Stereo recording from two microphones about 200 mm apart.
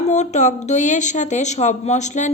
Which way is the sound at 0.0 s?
35° left (ahead or behind).